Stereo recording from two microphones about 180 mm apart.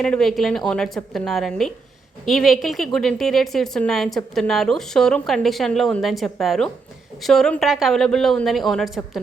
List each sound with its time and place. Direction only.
0.0 s a woman's voice: 5° left (ahead or behind)